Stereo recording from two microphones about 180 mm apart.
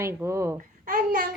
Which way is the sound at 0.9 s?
55° right (ahead or behind).